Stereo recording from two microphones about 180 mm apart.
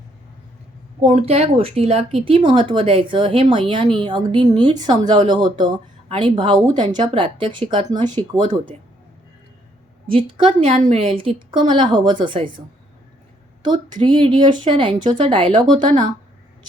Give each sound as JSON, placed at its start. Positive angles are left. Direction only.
{"t": 1.0, "sound": "speech", "side_deg": -35}
{"t": 10.1, "sound": "speech", "side_deg": -30}
{"t": 13.6, "sound": "speech", "side_deg": -25}